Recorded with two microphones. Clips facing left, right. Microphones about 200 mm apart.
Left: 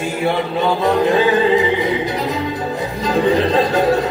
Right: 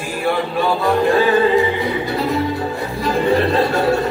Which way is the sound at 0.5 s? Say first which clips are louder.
Left 1 dB; 20° left (ahead or behind).